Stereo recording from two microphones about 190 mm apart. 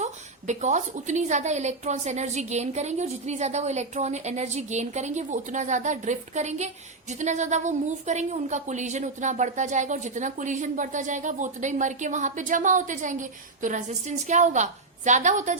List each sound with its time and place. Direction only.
0.0 s a woman's voice: 40° right (ahead or behind)